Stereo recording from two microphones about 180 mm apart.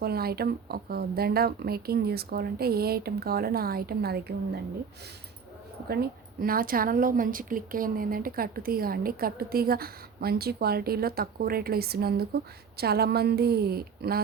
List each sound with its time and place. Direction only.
0.0 s a woman's voice: 60° right (ahead or behind)
5.9 s a woman's voice: 55° right (ahead or behind)